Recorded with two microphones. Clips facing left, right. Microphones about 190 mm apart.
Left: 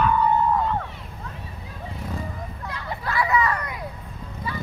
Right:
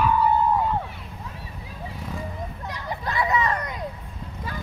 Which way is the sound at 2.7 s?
15° right (ahead or behind).